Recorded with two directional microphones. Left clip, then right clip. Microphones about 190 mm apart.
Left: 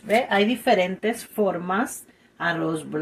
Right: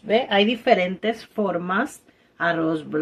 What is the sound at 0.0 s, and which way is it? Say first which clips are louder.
A woman's voice: right 1 dB; 15° right (ahead or behind).